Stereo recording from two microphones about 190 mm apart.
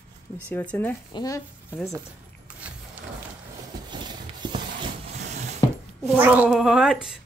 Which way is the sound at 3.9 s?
25° right (ahead or behind).